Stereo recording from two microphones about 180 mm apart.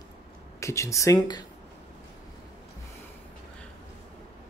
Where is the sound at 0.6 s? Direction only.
15° left (ahead or behind).